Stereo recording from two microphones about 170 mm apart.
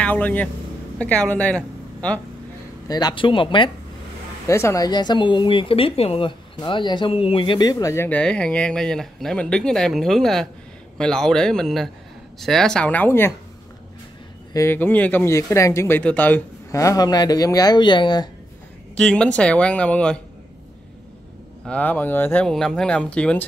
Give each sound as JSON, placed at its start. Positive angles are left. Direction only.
{"t": 0.0, "sound": "a man's voice", "side_deg": 10}
{"t": 2.9, "sound": "speech", "side_deg": 25}
{"t": 4.5, "sound": "a man's voice", "side_deg": 15}
{"t": 14.5, "sound": "speech", "side_deg": 15}
{"t": 18.9, "sound": "speech", "side_deg": 5}
{"t": 21.6, "sound": "speech", "side_deg": 10}